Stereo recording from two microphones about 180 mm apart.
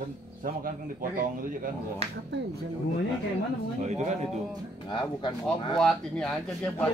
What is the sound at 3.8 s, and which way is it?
Speech, 40° right (ahead or behind).